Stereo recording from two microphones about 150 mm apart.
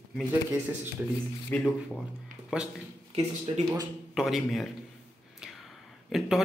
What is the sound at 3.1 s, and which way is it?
Speech, 45° right (ahead or behind).